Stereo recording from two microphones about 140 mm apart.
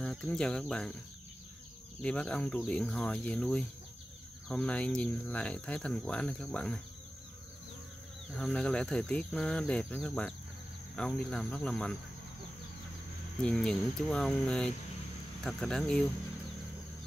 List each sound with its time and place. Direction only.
0.0 s speech: 5° left (ahead or behind)
2.0 s speech: 10° left (ahead or behind)
8.4 s speech: 5° left (ahead or behind)
13.4 s speech: 5° left (ahead or behind)